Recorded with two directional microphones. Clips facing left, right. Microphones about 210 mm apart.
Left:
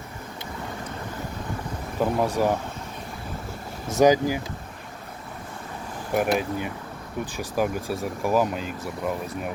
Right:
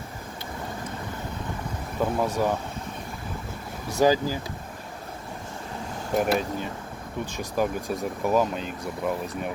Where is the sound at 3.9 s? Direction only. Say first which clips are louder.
Left 3 dB; 20° left (ahead or behind).